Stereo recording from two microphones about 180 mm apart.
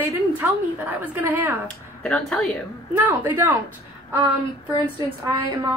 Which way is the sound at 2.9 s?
10° right (ahead or behind).